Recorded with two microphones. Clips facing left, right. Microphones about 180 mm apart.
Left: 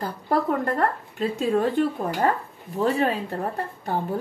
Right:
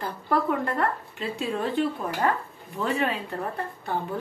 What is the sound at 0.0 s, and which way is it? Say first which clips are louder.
Speech: left 2 dB; 40° left (ahead or behind).